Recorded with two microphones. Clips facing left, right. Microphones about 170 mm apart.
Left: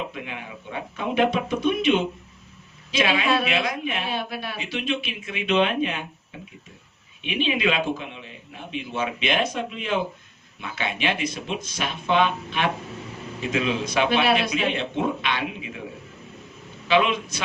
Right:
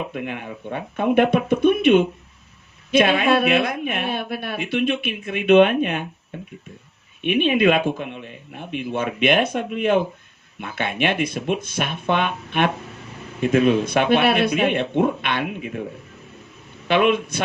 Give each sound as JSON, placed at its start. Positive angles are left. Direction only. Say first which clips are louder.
{"t": 0.1, "sound": "a woman's voice", "louder": "right 6 dB", "side_deg": -50}
{"t": 7.2, "sound": "a woman's voice", "louder": "right 7 dB", "side_deg": -55}
{"t": 16.9, "sound": "a woman's voice", "louder": "right 3 dB", "side_deg": -55}